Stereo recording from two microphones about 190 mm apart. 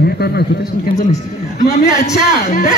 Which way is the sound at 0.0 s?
55° left (ahead or behind).